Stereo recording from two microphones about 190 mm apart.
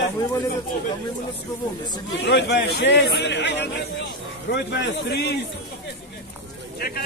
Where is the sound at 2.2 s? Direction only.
60° left (ahead or behind).